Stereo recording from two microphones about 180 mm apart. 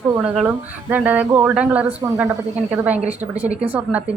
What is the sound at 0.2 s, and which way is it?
A woman's voice, 5° right (ahead or behind).